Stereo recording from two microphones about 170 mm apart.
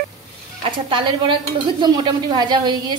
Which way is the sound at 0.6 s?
30° right (ahead or behind).